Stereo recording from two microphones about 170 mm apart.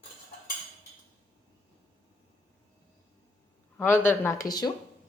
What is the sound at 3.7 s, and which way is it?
Speech, 10° left (ahead or behind).